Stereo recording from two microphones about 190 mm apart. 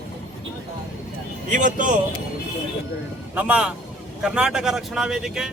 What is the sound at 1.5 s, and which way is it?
Speech, 45° right (ahead or behind).